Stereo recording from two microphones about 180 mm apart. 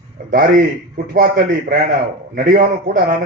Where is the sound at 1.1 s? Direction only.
50° right (ahead or behind).